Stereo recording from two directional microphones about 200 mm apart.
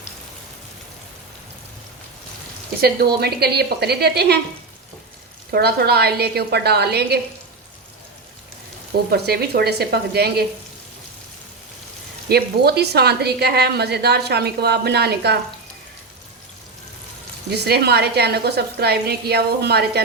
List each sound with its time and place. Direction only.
2.8 s a woman's voice: 50° right (ahead or behind)
5.5 s a woman's voice: 50° right (ahead or behind)
9.0 s a woman's voice: 50° right (ahead or behind)
12.3 s a woman's voice: 55° right (ahead or behind)
17.5 s a woman's voice: 55° right (ahead or behind)